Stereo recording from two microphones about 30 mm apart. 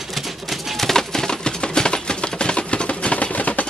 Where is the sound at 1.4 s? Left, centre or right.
Left.